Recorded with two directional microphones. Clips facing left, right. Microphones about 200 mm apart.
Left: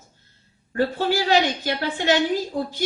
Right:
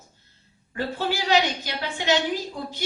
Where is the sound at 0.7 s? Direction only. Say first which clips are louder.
Left 6 dB; 45° left (ahead or behind).